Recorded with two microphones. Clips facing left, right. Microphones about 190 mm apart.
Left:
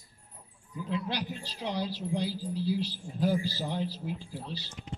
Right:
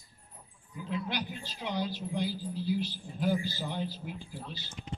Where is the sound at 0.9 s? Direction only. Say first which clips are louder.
Left 2 dB; 35° left (ahead or behind).